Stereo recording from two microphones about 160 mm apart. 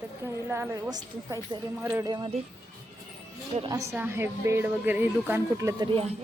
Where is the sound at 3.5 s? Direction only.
45° right (ahead or behind).